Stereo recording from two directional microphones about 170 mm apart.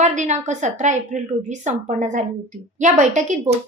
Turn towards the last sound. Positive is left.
turn(degrees=-45)  # may be behind; listen again after turning